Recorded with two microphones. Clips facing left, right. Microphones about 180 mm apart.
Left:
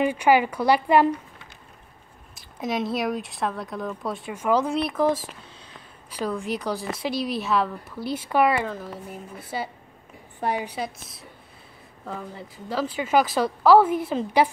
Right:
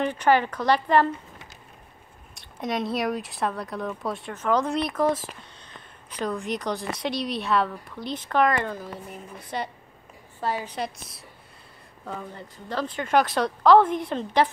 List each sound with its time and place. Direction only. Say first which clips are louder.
0.0 s speech: left 2 dB; 10° left (ahead or behind)
2.3 s a woman's voice: left 1 dB; centre (ahead or behind)
10.4 s speech: left 2 dB; 15° left (ahead or behind)
10.8 s a woman's voice: even; centre (ahead or behind)